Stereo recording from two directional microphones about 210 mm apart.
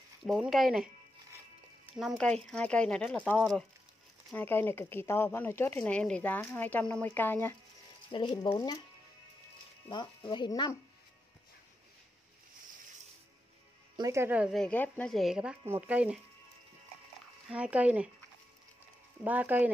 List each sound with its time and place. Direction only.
0.2 s a woman's voice: centre (ahead or behind)
2.0 s a woman's voice: centre (ahead or behind)
8.1 s speech: 20° left (ahead or behind)
9.8 s speech: 20° left (ahead or behind)
13.9 s a woman's voice: 15° right (ahead or behind)
17.5 s a woman's voice: 5° right (ahead or behind)
19.2 s speech: 5° right (ahead or behind)